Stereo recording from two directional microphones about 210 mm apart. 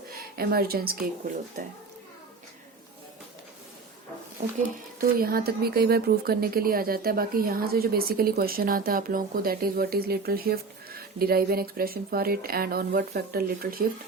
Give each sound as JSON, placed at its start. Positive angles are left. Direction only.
{"t": 0.1, "sound": "speech", "side_deg": -45}
{"t": 4.9, "sound": "a woman's voice", "side_deg": -45}